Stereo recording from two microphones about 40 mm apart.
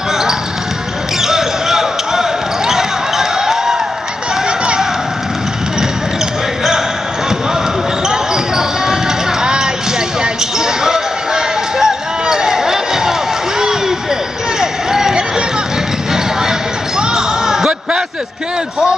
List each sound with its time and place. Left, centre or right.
1.2 s basketball bounce: centre
4.5 s a sound: right
8.1 s basketball bounce: centre
9.4 s music: centre
10.2 s basketball bounce: centre
13.6 s a sound: centre
14.6 s basketball bounce: centre